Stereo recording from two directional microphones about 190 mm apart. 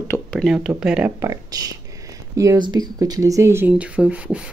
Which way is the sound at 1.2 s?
20° right (ahead or behind).